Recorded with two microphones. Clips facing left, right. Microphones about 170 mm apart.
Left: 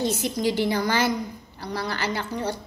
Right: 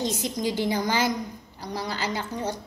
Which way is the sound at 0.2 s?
65° left (ahead or behind).